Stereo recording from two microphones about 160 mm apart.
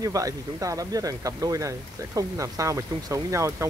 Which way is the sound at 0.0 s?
20° right (ahead or behind).